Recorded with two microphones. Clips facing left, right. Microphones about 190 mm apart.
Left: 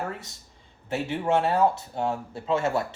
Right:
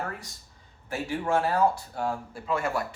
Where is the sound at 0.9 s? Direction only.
25° left (ahead or behind).